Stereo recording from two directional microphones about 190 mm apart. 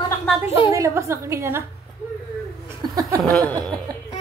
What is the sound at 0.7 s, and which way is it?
Speech, 15° right (ahead or behind).